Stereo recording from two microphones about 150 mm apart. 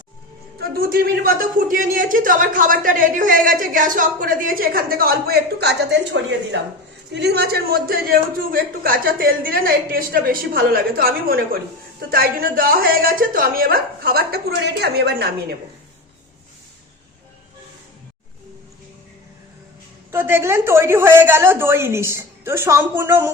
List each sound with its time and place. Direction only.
0.6 s a man's voice: 85° right
7.2 s a man's voice: 90° right
20.1 s a woman's voice: 15° right (ahead or behind)